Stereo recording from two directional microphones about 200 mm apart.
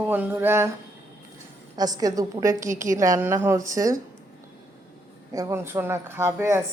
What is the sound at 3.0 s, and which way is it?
A woman's voice, 15° right (ahead or behind).